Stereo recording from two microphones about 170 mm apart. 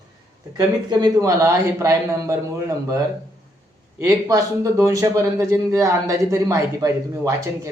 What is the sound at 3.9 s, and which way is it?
A man's voice, 20° right (ahead or behind).